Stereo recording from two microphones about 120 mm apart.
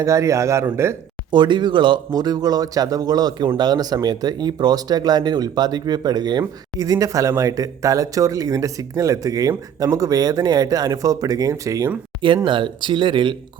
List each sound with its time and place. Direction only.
0.0 s a man's voice: 25° right (ahead or behind)
1.3 s speech: 40° right (ahead or behind)
12.5 s speech: 40° right (ahead or behind)